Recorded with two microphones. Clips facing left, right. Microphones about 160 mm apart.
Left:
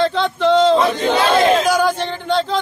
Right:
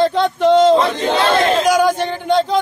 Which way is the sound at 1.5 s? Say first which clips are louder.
Right 1 dB; centre (ahead or behind).